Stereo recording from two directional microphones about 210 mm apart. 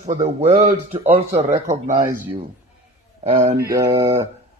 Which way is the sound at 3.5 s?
15° right (ahead or behind).